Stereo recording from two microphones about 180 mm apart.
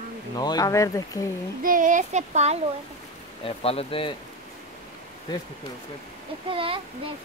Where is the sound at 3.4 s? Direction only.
30° left (ahead or behind).